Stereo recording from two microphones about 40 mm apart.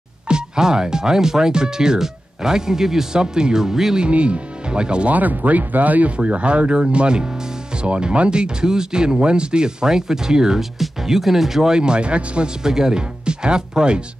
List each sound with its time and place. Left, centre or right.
0.3 s speech: centre
4.0 s speech: right
5.1 s speech: right
6.1 s speech: right
12.6 s speech: centre